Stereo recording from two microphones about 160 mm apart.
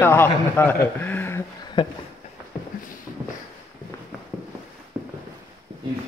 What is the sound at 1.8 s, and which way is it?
Speech, 30° left (ahead or behind).